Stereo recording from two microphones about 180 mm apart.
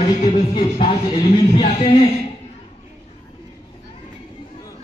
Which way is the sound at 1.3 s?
30° left (ahead or behind).